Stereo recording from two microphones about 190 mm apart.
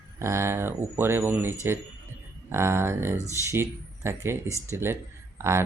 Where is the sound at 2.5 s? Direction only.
15° right (ahead or behind).